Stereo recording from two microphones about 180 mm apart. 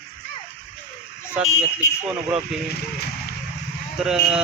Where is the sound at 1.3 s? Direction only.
5° right (ahead or behind).